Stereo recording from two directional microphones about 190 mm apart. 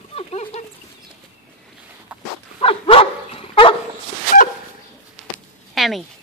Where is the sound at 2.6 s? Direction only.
30° left (ahead or behind).